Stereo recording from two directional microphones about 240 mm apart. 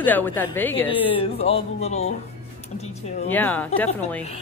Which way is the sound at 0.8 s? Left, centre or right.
Left.